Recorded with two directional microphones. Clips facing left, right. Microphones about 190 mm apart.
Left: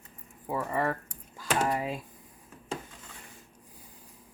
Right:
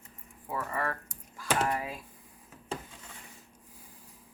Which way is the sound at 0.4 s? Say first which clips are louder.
Left 4 dB; 20° left (ahead or behind).